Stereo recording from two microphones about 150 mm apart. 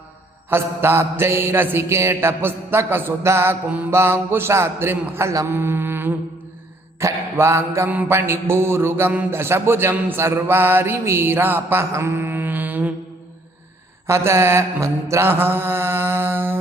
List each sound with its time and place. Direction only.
0.5 s mantra: 15° right (ahead or behind)
14.1 s mantra: 15° right (ahead or behind)